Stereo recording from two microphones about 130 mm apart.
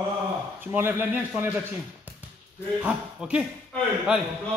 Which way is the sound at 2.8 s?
10° right (ahead or behind).